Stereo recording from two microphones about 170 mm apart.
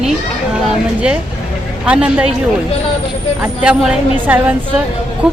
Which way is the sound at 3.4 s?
5° right (ahead or behind).